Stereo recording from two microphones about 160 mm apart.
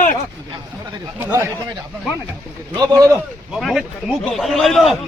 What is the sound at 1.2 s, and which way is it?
Speech, 15° right (ahead or behind).